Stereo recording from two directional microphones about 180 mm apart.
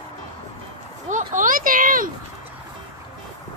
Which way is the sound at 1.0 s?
45° right (ahead or behind).